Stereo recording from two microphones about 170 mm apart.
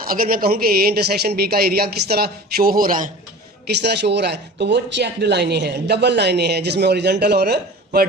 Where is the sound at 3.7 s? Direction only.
80° right.